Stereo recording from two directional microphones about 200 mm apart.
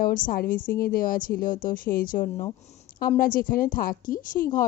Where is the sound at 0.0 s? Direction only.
45° left (ahead or behind).